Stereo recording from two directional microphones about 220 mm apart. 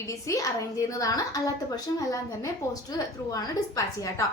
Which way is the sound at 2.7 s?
15° left (ahead or behind).